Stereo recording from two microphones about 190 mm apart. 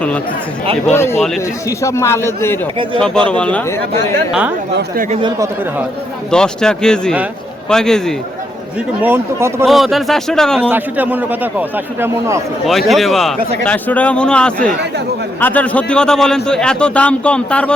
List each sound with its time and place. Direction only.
0.9 s a man's voice: 15° left (ahead or behind)
4.3 s a man's voice: 5° right (ahead or behind)
4.7 s speech: 60° right (ahead or behind)
6.3 s a man's voice: 5° left (ahead or behind)
9.0 s a man's voice: 10° right (ahead or behind)
9.6 s a man's voice: centre (ahead or behind)
10.7 s a man's voice: 10° right (ahead or behind)
12.6 s a man's voice: centre (ahead or behind)